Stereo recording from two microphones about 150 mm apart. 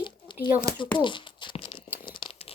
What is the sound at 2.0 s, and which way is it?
Crumpling, 35° left (ahead or behind).